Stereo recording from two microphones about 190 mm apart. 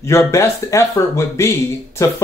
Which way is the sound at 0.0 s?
15° left (ahead or behind).